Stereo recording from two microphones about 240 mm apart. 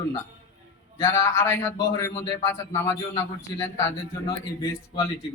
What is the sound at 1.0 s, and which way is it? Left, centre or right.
A man's voice, centre.